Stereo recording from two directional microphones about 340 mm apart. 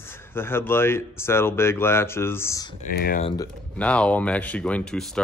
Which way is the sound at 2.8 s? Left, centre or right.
Left.